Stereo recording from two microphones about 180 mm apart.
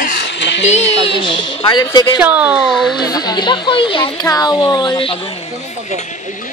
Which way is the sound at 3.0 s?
20° left (ahead or behind).